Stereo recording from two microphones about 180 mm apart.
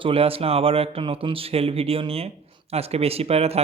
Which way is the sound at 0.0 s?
30° right (ahead or behind).